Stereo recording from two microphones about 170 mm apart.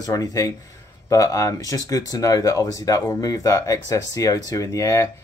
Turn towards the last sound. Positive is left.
turn(degrees=20)  # may be behind; listen again after turning